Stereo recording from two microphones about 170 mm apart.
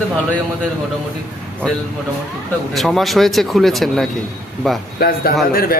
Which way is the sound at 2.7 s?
Centre (ahead or behind).